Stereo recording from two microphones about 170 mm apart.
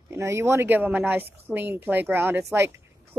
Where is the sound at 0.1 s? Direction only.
15° right (ahead or behind).